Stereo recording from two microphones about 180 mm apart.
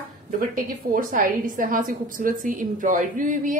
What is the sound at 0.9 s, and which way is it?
A woman's voice, 50° right (ahead or behind).